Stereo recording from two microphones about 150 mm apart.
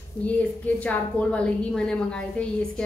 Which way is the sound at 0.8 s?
10° left (ahead or behind).